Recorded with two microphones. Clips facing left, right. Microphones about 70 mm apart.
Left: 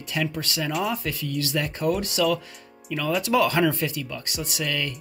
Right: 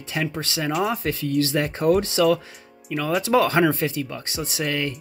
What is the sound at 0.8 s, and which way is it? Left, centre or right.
Speech, right.